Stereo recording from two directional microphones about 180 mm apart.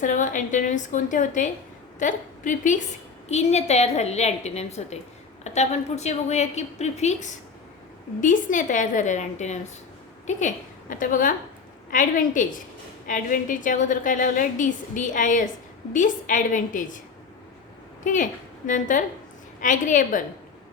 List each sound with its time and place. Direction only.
0.0 s a woman's voice: 45° left (ahead or behind)
18.0 s a woman's voice: 45° left (ahead or behind)